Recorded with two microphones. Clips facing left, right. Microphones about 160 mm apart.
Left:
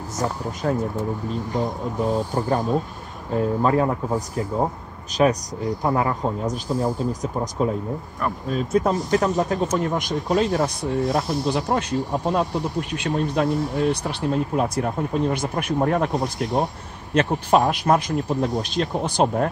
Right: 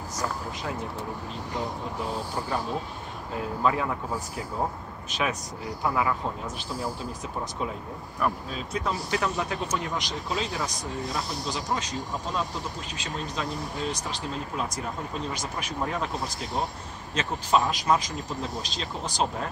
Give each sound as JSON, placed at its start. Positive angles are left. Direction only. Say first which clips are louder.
{"t": 0.2, "sound": "speech", "louder": "left 7 dB", "side_deg": 45}
{"t": 3.3, "sound": "speech", "louder": "left 7 dB", "side_deg": 40}
{"t": 5.1, "sound": "speech", "louder": "left 11 dB", "side_deg": 40}